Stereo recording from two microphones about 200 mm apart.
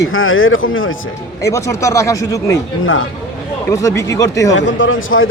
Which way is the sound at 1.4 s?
15° left (ahead or behind).